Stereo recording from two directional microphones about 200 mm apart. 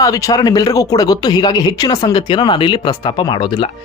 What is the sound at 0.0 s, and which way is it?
Speech, 15° left (ahead or behind).